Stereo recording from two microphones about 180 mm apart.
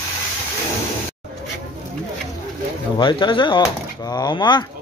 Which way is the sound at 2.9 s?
25° left (ahead or behind).